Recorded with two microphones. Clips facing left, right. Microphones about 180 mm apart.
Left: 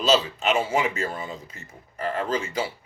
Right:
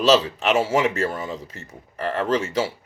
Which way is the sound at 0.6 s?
85° right.